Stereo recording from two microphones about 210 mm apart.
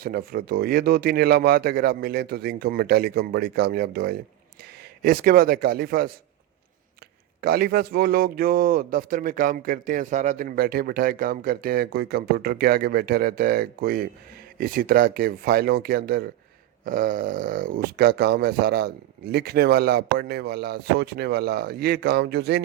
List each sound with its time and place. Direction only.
0.0 s speech: 45° right (ahead or behind)
7.4 s speech: 45° right (ahead or behind)